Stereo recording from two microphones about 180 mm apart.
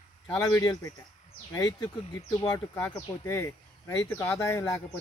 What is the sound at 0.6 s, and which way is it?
Speech, 20° left (ahead or behind).